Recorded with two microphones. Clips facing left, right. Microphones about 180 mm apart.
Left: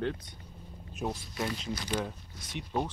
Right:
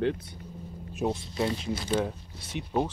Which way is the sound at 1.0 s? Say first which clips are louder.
Right 6 dB; 25° right (ahead or behind).